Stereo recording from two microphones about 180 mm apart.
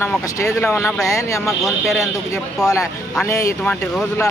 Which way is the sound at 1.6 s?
Centre (ahead or behind).